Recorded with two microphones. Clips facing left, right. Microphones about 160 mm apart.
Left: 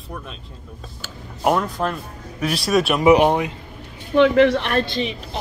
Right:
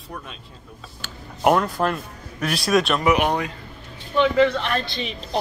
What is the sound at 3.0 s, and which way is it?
Speech, 25° left (ahead or behind).